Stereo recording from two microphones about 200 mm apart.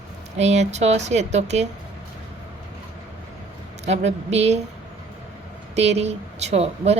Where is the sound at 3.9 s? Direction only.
35° right (ahead or behind).